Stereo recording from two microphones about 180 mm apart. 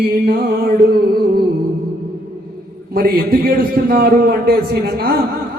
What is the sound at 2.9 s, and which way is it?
A man's voice, 60° right (ahead or behind).